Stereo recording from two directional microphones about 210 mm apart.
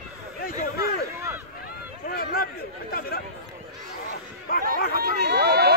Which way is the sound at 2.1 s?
45° left (ahead or behind).